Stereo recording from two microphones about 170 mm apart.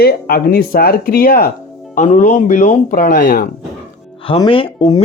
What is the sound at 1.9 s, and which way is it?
Speech, 45° left (ahead or behind).